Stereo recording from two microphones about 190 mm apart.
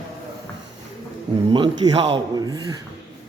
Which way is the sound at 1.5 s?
25° right (ahead or behind).